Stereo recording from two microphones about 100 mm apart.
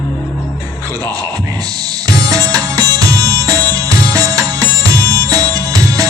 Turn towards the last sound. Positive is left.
turn(degrees=-35)  # may be behind; listen again after turning